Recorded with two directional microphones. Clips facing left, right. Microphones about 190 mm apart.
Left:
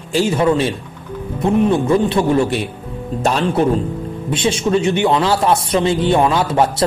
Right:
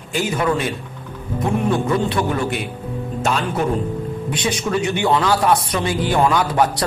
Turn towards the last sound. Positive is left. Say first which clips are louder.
# left 3 dB
turn(degrees=25)  # may be behind; listen again after turning